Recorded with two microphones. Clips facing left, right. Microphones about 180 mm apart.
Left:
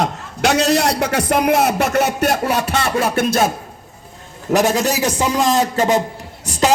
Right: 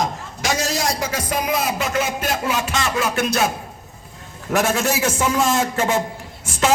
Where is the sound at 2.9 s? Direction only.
55° left (ahead or behind).